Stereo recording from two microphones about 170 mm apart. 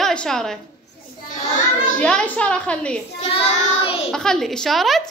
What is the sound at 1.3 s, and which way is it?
Child singing, 50° left (ahead or behind).